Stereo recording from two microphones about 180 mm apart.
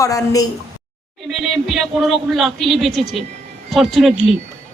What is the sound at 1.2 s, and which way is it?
Speech, centre (ahead or behind).